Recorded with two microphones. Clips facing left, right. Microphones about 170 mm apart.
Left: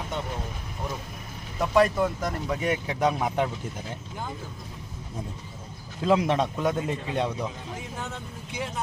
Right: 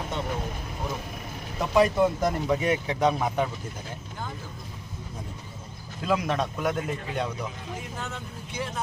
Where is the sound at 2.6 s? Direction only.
5° left (ahead or behind).